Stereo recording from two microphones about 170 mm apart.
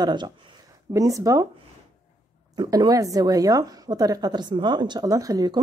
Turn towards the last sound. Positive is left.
turn(degrees=-20)  # may be behind; listen again after turning